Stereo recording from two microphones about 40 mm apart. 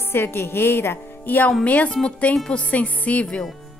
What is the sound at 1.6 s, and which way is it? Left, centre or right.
Music, left.